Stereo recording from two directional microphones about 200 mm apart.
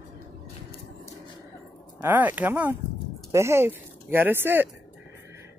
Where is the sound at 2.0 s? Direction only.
10° right (ahead or behind).